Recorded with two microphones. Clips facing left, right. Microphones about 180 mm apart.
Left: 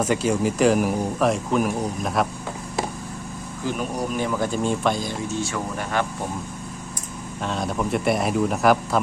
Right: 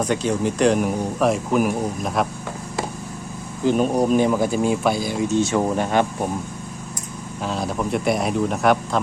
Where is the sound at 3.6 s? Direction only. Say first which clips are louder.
Right 8 dB; 25° right (ahead or behind).